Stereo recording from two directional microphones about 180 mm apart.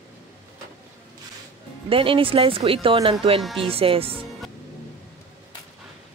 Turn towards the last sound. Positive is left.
turn(degrees=-30)  # may be behind; listen again after turning